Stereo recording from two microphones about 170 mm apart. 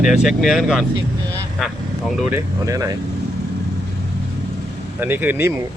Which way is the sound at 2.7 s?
20° right (ahead or behind).